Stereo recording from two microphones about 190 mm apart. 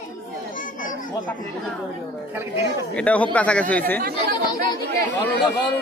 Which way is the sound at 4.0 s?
55° right (ahead or behind).